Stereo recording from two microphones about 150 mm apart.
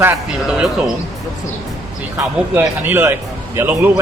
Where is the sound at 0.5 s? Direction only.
5° right (ahead or behind).